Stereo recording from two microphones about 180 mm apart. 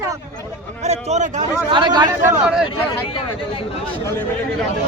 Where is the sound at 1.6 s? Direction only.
25° right (ahead or behind).